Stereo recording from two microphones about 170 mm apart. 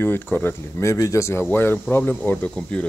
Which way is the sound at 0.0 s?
10° left (ahead or behind).